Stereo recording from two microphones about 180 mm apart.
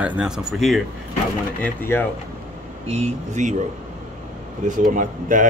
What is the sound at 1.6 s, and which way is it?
Speech, 10° left (ahead or behind).